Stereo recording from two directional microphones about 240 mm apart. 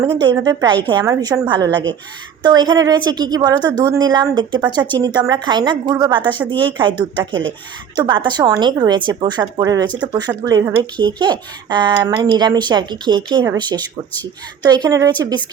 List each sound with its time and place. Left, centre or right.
0.0 s a woman's voice: centre